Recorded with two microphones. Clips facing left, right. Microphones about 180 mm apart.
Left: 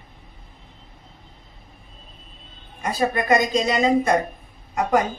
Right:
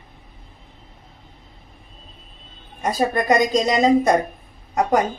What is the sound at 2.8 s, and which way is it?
A woman's voice, 40° right (ahead or behind).